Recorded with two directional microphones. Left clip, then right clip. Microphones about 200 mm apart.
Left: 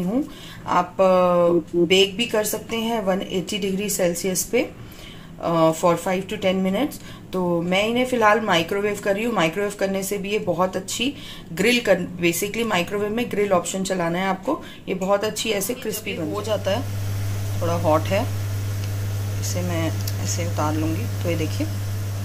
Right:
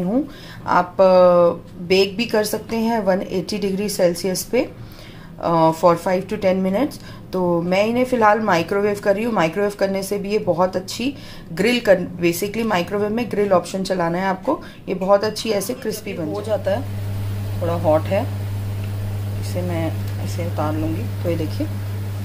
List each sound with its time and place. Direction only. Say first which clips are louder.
0.7 s a woman's voice: right 4 dB; 5° right (ahead or behind)
21.2 s a woman's voice: right 3 dB; centre (ahead or behind)